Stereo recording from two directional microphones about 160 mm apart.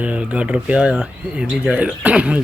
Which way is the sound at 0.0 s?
10° right (ahead or behind).